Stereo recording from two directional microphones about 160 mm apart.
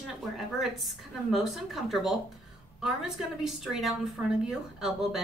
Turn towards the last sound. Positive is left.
turn(degrees=0)  # may be behind; listen again after turning